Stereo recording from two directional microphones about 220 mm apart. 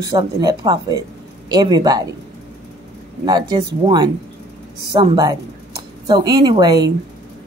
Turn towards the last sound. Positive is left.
turn(degrees=-20)  # may be behind; listen again after turning